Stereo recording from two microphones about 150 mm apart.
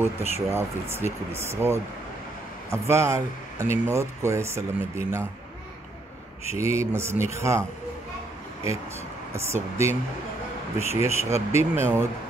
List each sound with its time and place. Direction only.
0.0 s speech: 15° right (ahead or behind)
6.5 s speech: 20° right (ahead or behind)
9.3 s speech: 20° right (ahead or behind)